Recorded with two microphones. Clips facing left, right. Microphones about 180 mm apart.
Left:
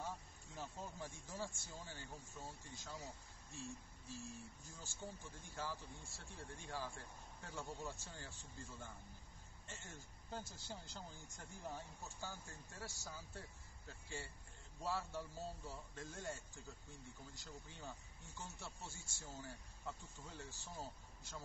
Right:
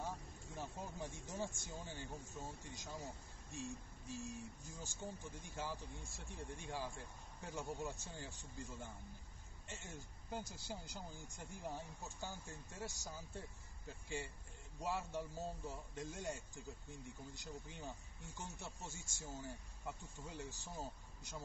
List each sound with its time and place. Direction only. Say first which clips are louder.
0.6 s speech: right 2 dB; 15° right (ahead or behind)
4.1 s speech: right 4 dB; 15° right (ahead or behind)